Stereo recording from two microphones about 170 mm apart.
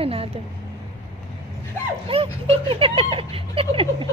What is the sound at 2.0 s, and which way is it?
Speech, 35° right (ahead or behind).